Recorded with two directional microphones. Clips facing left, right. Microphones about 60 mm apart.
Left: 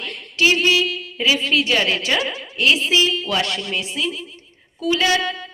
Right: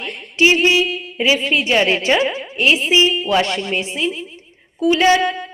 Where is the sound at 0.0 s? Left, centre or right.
Right.